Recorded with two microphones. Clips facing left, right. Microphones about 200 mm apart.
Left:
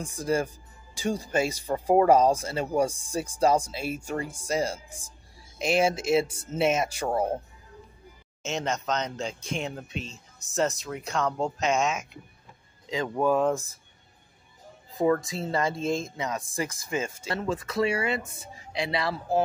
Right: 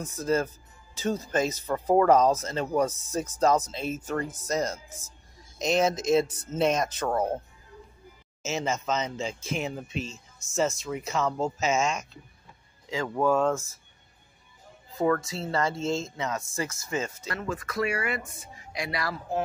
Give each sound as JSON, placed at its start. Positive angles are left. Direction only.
{"t": 0.0, "sound": "speech", "side_deg": 15}
{"t": 8.4, "sound": "speech", "side_deg": -5}
{"t": 12.8, "sound": "speech", "side_deg": 20}
{"t": 15.0, "sound": "speech", "side_deg": 15}
{"t": 17.3, "sound": "speech", "side_deg": 25}